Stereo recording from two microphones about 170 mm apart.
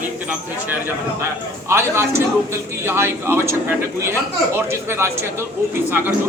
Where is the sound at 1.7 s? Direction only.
15° right (ahead or behind).